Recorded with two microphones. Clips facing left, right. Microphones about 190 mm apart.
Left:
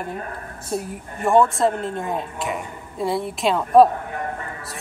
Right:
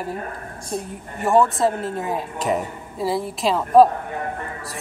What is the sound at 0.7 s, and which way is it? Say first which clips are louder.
A woman's voice: left 2 dB; centre (ahead or behind).